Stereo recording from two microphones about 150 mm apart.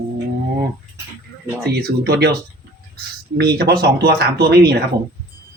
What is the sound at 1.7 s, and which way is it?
Speech, 90° right.